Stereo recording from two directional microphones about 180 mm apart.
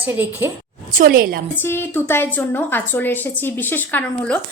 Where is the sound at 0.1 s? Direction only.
10° right (ahead or behind).